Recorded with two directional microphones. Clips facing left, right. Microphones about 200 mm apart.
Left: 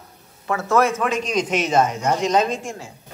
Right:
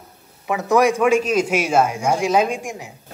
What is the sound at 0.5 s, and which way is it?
A man's voice, 15° right (ahead or behind).